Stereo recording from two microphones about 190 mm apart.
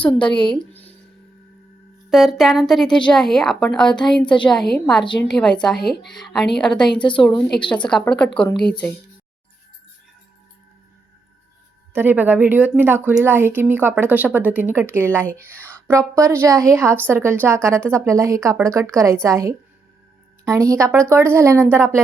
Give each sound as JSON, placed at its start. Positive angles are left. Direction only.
{"t": 0.4, "sound": "a woman's voice", "side_deg": 5}
{"t": 2.0, "sound": "a woman's voice", "side_deg": 0}
{"t": 6.8, "sound": "a woman's voice", "side_deg": 25}
{"t": 7.2, "sound": "a woman's voice", "side_deg": 10}
{"t": 11.9, "sound": "a woman's voice", "side_deg": -10}